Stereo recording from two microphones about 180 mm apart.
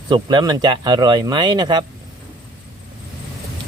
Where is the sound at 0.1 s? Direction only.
25° right (ahead or behind).